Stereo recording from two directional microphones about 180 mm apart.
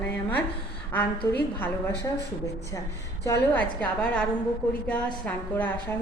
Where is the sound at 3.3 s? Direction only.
10° left (ahead or behind).